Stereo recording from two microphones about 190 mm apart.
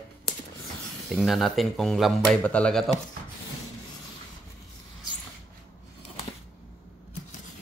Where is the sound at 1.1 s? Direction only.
Centre (ahead or behind).